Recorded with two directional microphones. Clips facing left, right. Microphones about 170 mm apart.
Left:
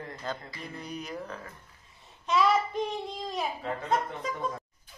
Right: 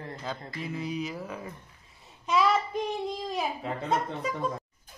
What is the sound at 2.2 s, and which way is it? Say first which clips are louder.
Child singing: even; centre (ahead or behind).